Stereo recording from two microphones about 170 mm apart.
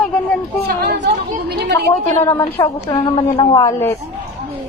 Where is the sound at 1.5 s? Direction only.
75° right (ahead or behind).